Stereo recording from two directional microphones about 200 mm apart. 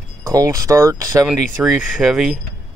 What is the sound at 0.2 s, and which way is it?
Speech, 15° right (ahead or behind).